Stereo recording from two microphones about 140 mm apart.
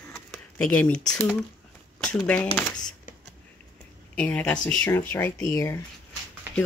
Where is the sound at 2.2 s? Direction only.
10° left (ahead or behind).